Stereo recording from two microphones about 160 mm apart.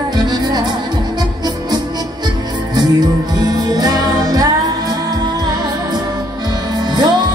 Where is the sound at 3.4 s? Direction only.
25° right (ahead or behind).